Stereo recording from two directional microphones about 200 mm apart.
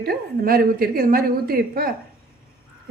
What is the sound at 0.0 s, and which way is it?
A woman's voice, 50° right (ahead or behind).